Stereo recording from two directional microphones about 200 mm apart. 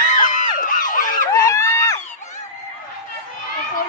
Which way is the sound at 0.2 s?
40° left (ahead or behind).